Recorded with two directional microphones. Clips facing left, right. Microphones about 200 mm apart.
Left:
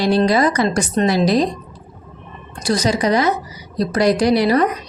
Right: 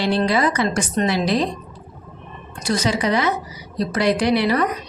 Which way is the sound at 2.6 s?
35° left (ahead or behind).